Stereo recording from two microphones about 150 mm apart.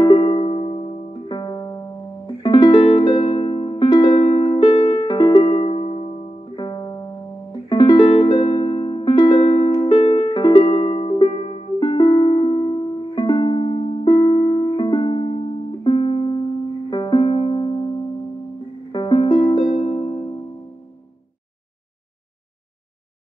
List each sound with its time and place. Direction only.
0.0 s music: 35° left (ahead or behind)
18.9 s music: 30° left (ahead or behind)